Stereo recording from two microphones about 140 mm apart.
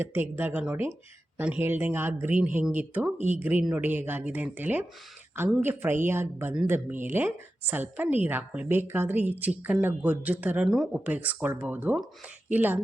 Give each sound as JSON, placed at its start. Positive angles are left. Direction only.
{"t": 0.0, "sound": "a woman's voice", "side_deg": -15}